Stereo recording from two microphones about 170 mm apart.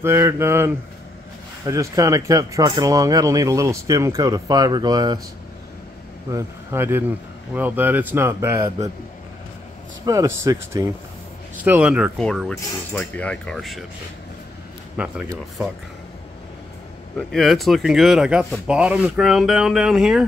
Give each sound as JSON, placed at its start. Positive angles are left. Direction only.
{"t": 0.0, "sound": "speech", "side_deg": -15}
{"t": 1.7, "sound": "speech", "side_deg": -20}
{"t": 6.3, "sound": "speech", "side_deg": -15}
{"t": 10.0, "sound": "speech", "side_deg": -20}
{"t": 15.0, "sound": "speech", "side_deg": -5}
{"t": 17.3, "sound": "speech", "side_deg": 0}